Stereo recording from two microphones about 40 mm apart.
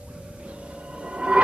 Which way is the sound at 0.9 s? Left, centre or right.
Right.